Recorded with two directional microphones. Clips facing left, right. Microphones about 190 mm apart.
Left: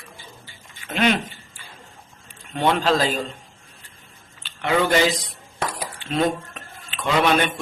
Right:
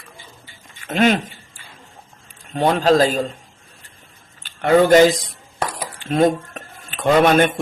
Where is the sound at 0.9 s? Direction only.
45° right (ahead or behind).